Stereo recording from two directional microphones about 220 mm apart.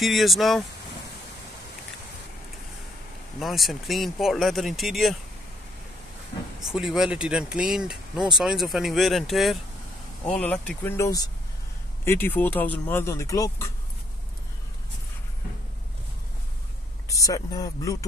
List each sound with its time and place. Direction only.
0.0 s speech: centre (ahead or behind)
3.3 s speech: centre (ahead or behind)
6.6 s speech: centre (ahead or behind); by 13.7 s 15° left (ahead or behind)
17.1 s speech: 15° left (ahead or behind)